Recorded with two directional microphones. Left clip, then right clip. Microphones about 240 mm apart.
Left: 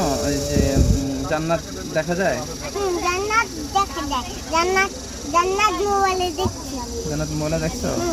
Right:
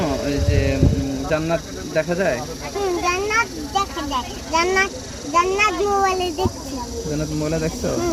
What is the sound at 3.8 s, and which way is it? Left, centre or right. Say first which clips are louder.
Speech: left 1 dB; centre.